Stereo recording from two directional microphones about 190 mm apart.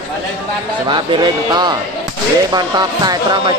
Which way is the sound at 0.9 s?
25° right (ahead or behind).